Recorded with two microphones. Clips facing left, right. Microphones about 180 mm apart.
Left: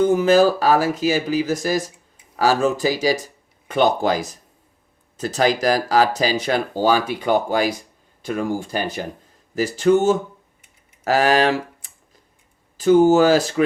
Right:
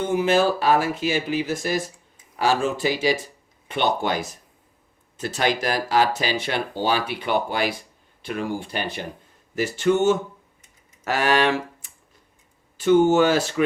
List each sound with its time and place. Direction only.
0.0 s speech: 40° left (ahead or behind)
12.7 s speech: 35° left (ahead or behind)